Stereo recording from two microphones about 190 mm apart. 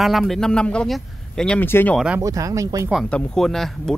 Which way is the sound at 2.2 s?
15° right (ahead or behind).